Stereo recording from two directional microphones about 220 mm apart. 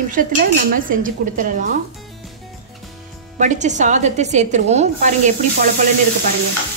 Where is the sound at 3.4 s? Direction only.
35° right (ahead or behind).